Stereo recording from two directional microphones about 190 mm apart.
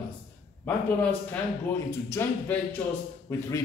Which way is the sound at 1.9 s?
15° left (ahead or behind).